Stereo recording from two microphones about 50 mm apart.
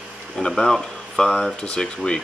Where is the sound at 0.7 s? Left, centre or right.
Centre.